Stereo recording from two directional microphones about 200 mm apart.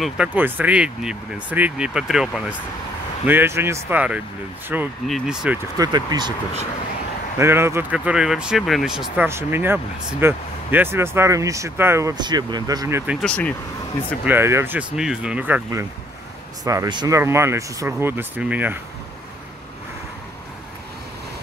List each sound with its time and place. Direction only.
0.0 s speech: 5° right (ahead or behind)
5.8 s speech: 20° right (ahead or behind)
7.3 s speech: 10° right (ahead or behind)
13.2 s speech: 5° left (ahead or behind)
14.2 s speech: 10° right (ahead or behind)